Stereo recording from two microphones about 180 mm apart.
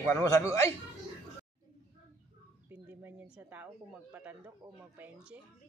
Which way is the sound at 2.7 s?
10° right (ahead or behind).